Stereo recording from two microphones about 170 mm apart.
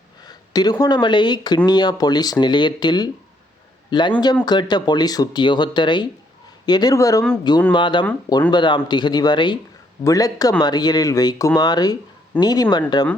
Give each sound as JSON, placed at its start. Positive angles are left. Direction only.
{"t": 0.2, "sound": "speech", "side_deg": 25}